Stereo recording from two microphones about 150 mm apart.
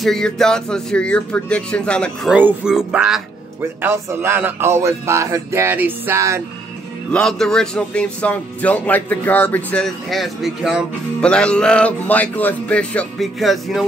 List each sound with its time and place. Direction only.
0.0 s speech: 5° left (ahead or behind)
2.3 s music: 10° right (ahead or behind)
3.8 s speech: 15° right (ahead or behind)
7.1 s speech: 5° left (ahead or behind)